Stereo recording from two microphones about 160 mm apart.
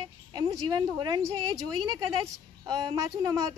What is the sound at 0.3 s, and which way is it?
A woman's voice, 25° right (ahead or behind).